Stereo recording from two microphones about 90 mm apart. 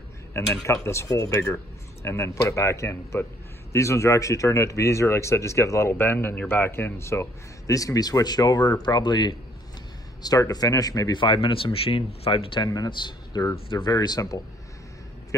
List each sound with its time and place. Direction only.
0.8 s speech: 35° left (ahead or behind); by 9.4 s 55° left (ahead or behind)
10.2 s speech: 45° left (ahead or behind)
11.4 s speech: 85° left
12.6 s speech: 45° left (ahead or behind)
13.7 s speech: 65° left (ahead or behind)
13.9 s speech: 45° left (ahead or behind)